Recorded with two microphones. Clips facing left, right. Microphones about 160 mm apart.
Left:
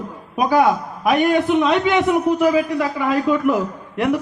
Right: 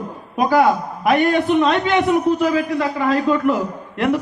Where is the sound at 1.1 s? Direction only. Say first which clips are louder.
Even; 15° left (ahead or behind).